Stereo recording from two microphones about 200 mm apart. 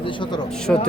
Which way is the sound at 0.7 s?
5° left (ahead or behind).